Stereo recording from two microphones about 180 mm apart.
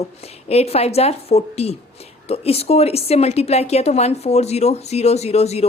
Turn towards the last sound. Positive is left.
turn(degrees=35)  # may be behind; listen again after turning